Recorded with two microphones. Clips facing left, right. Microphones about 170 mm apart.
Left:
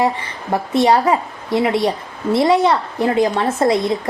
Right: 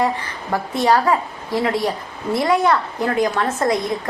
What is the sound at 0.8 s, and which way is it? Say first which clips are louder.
Speech: left 2 dB; 20° left (ahead or behind).